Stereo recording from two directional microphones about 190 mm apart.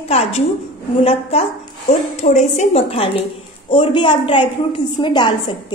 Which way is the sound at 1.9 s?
40° left (ahead or behind).